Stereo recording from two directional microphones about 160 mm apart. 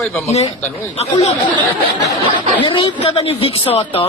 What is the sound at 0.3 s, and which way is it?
Speech, 40° left (ahead or behind).